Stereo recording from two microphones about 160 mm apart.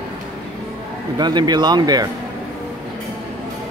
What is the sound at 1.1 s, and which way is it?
Speech, 25° right (ahead or behind).